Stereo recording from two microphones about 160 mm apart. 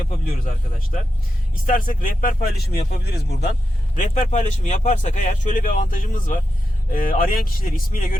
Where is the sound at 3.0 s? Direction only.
90° left.